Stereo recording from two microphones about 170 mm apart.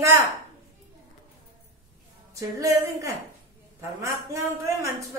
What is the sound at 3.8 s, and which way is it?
A man's voice, 15° right (ahead or behind).